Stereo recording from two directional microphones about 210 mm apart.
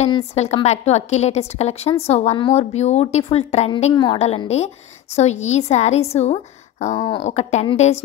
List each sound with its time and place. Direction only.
0.0 s a woman's voice: 30° left (ahead or behind)